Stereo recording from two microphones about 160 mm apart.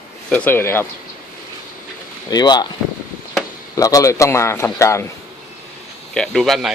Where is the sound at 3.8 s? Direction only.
20° left (ahead or behind).